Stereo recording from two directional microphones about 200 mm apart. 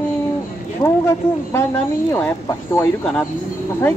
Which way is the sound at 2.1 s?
15° left (ahead or behind).